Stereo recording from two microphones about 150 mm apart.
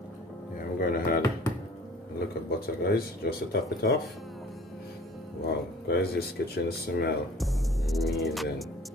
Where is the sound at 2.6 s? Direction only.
90° left.